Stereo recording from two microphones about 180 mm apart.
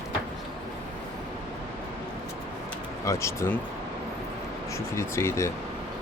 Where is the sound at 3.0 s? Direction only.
15° left (ahead or behind).